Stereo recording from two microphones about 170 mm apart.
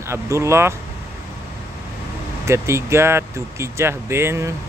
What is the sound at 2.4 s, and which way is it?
Speech, 15° right (ahead or behind).